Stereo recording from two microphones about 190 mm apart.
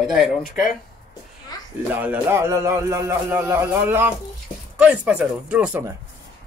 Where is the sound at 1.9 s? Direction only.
10° right (ahead or behind).